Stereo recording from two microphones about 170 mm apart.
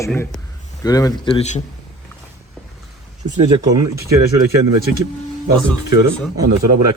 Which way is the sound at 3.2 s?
25° right (ahead or behind).